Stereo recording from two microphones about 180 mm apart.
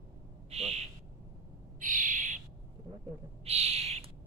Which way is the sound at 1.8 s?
45° right (ahead or behind).